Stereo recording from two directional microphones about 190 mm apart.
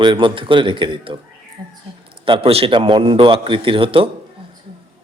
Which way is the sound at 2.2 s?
30° right (ahead or behind).